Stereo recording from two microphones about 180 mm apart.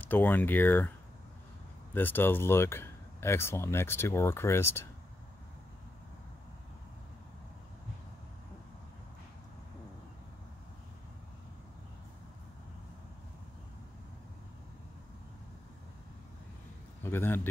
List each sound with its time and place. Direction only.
0.0 s speech: 10° left (ahead or behind)
2.0 s speech: 10° left (ahead or behind)
17.0 s a man's voice: 10° left (ahead or behind)